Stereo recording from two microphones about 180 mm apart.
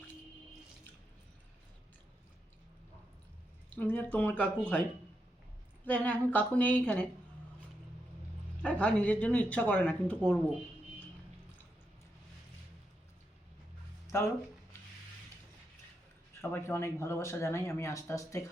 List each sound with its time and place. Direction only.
3.8 s speech: 10° left (ahead or behind)
5.8 s speech: 10° left (ahead or behind)
8.6 s speech: 5° left (ahead or behind)
14.1 s speech: 15° left (ahead or behind)
16.4 s speech: 15° left (ahead or behind)